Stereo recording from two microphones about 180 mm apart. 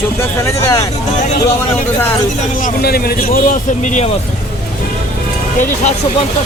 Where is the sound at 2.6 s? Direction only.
60° left (ahead or behind).